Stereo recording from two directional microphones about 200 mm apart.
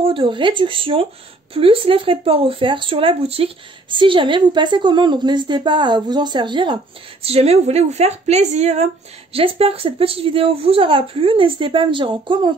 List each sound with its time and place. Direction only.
0.0 s speech: 25° right (ahead or behind)